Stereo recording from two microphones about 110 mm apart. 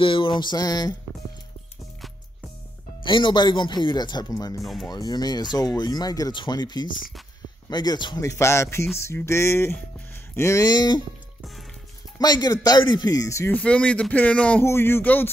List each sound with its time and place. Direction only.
0.0 s speech: 50° left (ahead or behind); by 0.9 s 35° left (ahead or behind)
3.0 s speech: 45° left (ahead or behind)
4.6 s speech: centre (ahead or behind)
4.9 s speech: 40° left (ahead or behind)
8.2 s a sound: 25° left (ahead or behind)
10.7 s speech: 40° left (ahead or behind)
12.2 s speech: 35° left (ahead or behind)
13.5 s speech: 10° left (ahead or behind)
14.6 s a sound: 20° left (ahead or behind)